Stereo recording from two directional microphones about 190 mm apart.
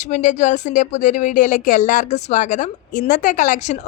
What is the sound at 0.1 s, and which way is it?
A woman's voice, 40° left (ahead or behind).